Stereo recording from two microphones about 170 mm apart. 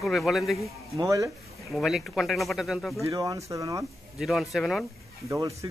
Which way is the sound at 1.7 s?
Centre (ahead or behind).